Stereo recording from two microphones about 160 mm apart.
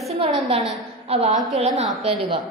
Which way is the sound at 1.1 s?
40° right (ahead or behind).